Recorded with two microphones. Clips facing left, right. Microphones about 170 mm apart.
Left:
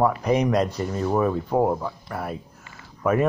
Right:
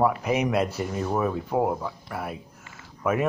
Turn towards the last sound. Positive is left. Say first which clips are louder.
# left 3 dB
turn(degrees=-5)  # may be behind; listen again after turning